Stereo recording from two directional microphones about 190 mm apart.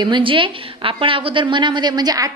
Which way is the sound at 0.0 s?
25° right (ahead or behind).